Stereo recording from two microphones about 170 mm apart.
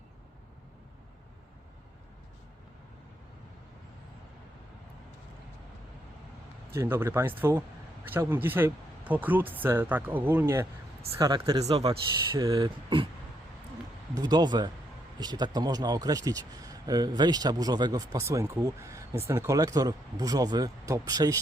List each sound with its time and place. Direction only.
6.7 s speech: 15° right (ahead or behind)
11.8 s speech: 35° right (ahead or behind)
12.4 s speech: 25° right (ahead or behind)
14.2 s speech: 25° right (ahead or behind)